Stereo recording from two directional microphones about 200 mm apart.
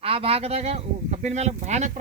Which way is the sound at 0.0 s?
30° right (ahead or behind).